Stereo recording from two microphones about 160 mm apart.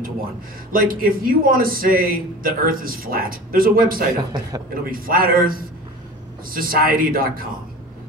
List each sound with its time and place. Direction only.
0.7 s a man's voice: 65° right (ahead or behind)
4.2 s a man's voice: 25° right (ahead or behind)
4.9 s a man's voice: 65° right (ahead or behind)